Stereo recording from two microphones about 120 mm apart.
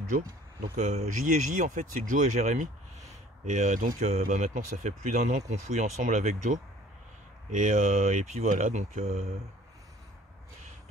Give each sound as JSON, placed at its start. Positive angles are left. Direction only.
{"t": 0.7, "sound": "speech", "side_deg": -85}